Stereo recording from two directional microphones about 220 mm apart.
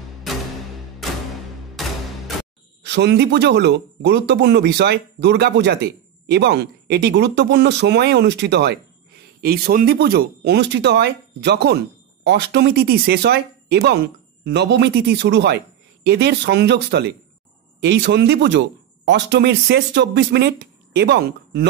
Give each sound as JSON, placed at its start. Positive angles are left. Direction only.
{"t": 1.0, "sound": "music", "side_deg": 0}
{"t": 2.8, "sound": "speech", "side_deg": -50}